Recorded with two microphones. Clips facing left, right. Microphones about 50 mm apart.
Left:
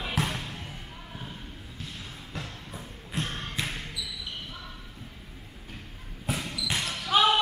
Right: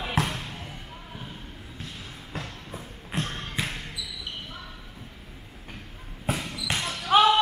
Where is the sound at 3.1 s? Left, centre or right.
Right.